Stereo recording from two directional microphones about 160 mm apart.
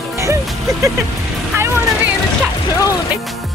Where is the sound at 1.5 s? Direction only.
15° right (ahead or behind).